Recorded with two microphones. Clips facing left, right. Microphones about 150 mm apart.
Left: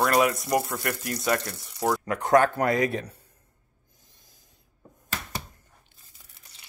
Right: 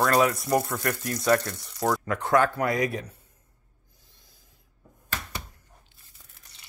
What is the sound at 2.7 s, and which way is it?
Frying, 25° left (ahead or behind).